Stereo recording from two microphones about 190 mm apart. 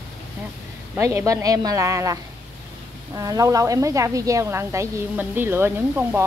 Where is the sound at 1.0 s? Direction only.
15° right (ahead or behind).